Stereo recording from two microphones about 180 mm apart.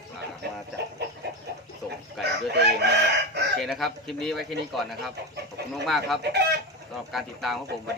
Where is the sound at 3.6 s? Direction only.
Centre (ahead or behind).